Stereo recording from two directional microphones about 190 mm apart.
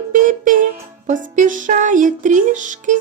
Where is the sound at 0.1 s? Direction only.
45° right (ahead or behind).